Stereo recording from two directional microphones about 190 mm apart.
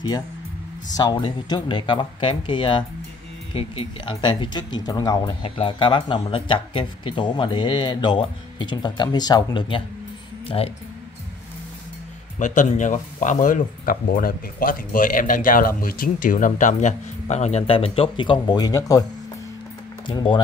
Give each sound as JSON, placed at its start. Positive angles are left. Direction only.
{"t": 0.9, "sound": "speech", "side_deg": 20}
{"t": 12.4, "sound": "speech", "side_deg": 40}
{"t": 20.1, "sound": "speech", "side_deg": 25}